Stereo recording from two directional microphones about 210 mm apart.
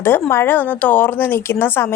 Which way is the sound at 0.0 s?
10° left (ahead or behind).